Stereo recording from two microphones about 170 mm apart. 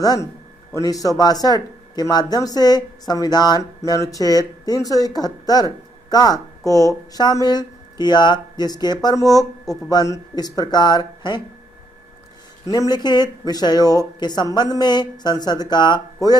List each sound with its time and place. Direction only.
0.0 s speech: 20° left (ahead or behind)
12.6 s speech: 20° left (ahead or behind)